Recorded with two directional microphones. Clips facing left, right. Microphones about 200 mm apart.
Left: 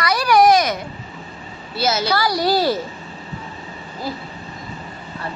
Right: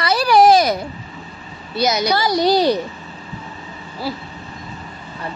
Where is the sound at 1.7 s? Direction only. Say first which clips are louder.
Right 2 dB; 15° right (ahead or behind).